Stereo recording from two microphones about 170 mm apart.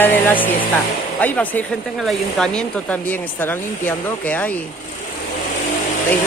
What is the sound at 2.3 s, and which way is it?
Speech, 5° left (ahead or behind).